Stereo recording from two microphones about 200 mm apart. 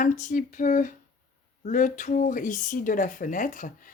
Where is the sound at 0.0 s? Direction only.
40° left (ahead or behind).